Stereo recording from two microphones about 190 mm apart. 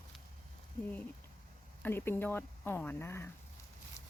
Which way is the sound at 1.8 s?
10° left (ahead or behind).